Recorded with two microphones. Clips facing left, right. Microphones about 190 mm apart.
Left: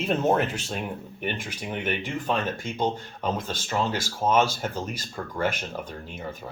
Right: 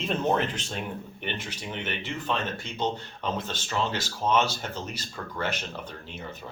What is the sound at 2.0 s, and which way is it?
Speech, 45° left (ahead or behind).